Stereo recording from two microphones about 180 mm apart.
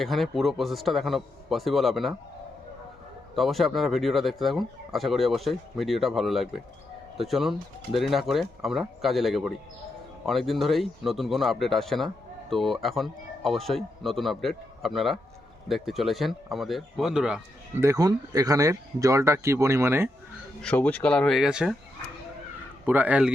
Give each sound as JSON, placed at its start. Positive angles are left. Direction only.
{"t": 0.0, "sound": "speech", "side_deg": 0}
{"t": 3.3, "sound": "speech", "side_deg": 0}
{"t": 17.7, "sound": "speech", "side_deg": -15}
{"t": 20.6, "sound": "speech", "side_deg": 5}
{"t": 22.9, "sound": "speech", "side_deg": -10}